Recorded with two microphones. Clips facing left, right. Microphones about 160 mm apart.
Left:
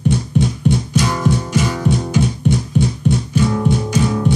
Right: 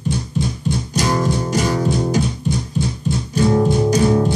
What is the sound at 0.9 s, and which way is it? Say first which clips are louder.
Music: left 1 dB; 40° right (ahead or behind).